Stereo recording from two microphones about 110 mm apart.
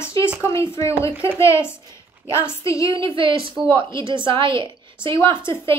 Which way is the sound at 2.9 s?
50° right (ahead or behind).